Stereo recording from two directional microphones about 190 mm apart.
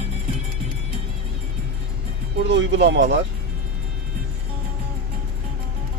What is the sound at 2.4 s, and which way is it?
Speech, 70° right (ahead or behind).